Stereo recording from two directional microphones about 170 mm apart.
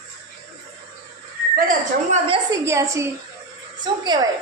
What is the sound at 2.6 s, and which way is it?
A woman's voice, 15° right (ahead or behind).